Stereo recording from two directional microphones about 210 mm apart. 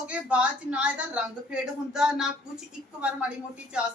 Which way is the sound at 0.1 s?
5° right (ahead or behind).